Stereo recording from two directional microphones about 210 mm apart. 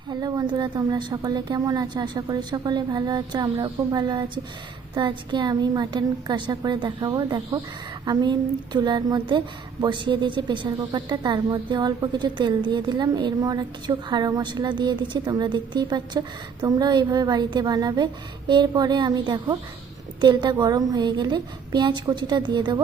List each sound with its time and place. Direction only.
0.1 s a woman's voice: 20° right (ahead or behind)